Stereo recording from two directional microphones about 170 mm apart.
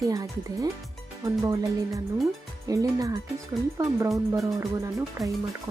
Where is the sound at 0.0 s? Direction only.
20° right (ahead or behind).